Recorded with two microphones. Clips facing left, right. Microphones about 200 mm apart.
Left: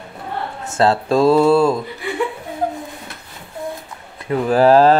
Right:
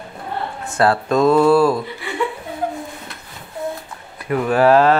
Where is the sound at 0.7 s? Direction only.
25° left (ahead or behind).